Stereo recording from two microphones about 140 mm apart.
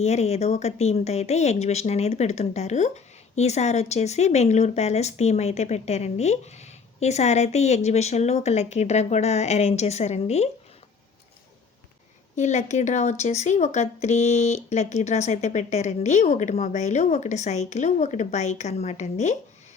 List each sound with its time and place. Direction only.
0.0 s speech: 50° left (ahead or behind)
12.4 s speech: 55° left (ahead or behind)